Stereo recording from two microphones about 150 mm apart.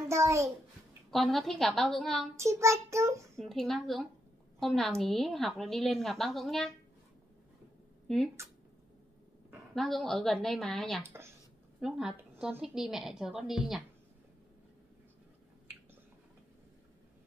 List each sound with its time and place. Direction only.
0.1 s a child's voice: 20° right (ahead or behind)
1.1 s a woman's voice: centre (ahead or behind)
2.3 s child singing: 20° right (ahead or behind)
3.3 s a woman's voice: centre (ahead or behind)
8.4 s speech: 15° right (ahead or behind)
9.5 s a woman's voice: centre (ahead or behind)
11.0 s speech: 15° right (ahead or behind)
11.8 s a woman's voice: 5° right (ahead or behind)